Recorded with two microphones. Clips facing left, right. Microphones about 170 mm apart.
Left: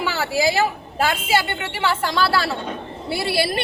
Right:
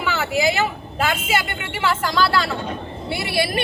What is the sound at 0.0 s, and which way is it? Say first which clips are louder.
A woman's voice: even; 30° left (ahead or behind).